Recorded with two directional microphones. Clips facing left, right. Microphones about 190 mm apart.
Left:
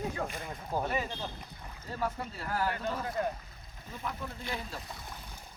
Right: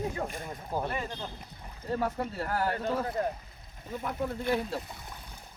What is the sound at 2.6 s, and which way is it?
Speech, 25° right (ahead or behind).